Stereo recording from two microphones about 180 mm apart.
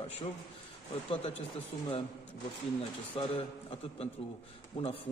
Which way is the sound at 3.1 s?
30° left (ahead or behind).